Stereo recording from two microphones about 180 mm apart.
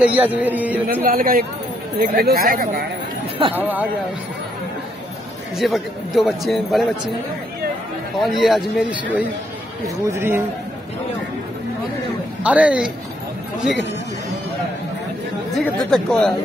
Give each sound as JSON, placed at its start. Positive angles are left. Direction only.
{"t": 0.0, "sound": "a man's voice", "side_deg": -10}
{"t": 1.0, "sound": "speech", "side_deg": -55}
{"t": 3.5, "sound": "a man's voice", "side_deg": -10}
{"t": 5.6, "sound": "a man's voice", "side_deg": 0}
{"t": 8.2, "sound": "a man's voice", "side_deg": 0}
{"t": 12.4, "sound": "a man's voice", "side_deg": -5}
{"t": 15.5, "sound": "a man's voice", "side_deg": 5}